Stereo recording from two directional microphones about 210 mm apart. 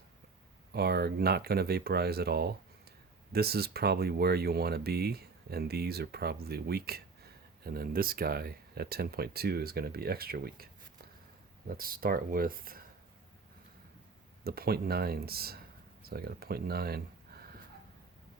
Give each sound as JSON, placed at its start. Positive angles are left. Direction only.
{"t": 0.7, "sound": "speech", "side_deg": -50}
{"t": 11.7, "sound": "speech", "side_deg": -45}
{"t": 14.4, "sound": "speech", "side_deg": -45}